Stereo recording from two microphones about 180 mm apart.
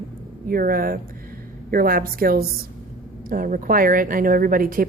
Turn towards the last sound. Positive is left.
turn(degrees=-50)  # may be behind; listen again after turning